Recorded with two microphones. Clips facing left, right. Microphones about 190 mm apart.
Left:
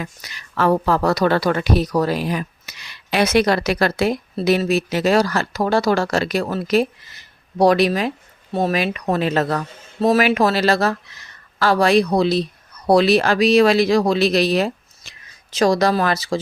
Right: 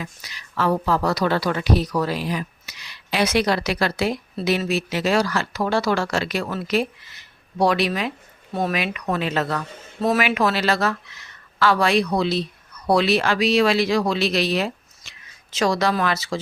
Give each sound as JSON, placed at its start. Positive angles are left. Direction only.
{"t": 0.0, "sound": "a woman's voice", "side_deg": 50}